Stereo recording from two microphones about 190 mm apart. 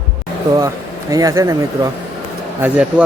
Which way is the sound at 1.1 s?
20° right (ahead or behind).